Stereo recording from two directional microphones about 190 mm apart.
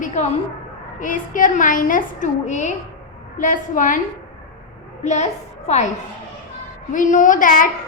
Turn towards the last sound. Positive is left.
turn(degrees=45)  # may be behind; listen again after turning